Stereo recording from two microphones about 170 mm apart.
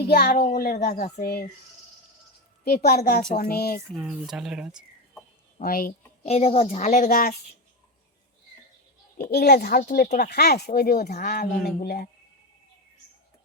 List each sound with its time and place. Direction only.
0.1 s a child's voice: 70° left (ahead or behind); by 1.1 s 50° left (ahead or behind)
1.1 s speech: 70° left (ahead or behind)
2.6 s a child's voice: 65° left (ahead or behind)
3.9 s speech: centre (ahead or behind)
5.5 s a child's voice: 60° left (ahead or behind)
6.2 s a woman's voice: 35° left (ahead or behind); by 7.3 s 55° left (ahead or behind)
9.3 s a child's voice: 70° left (ahead or behind)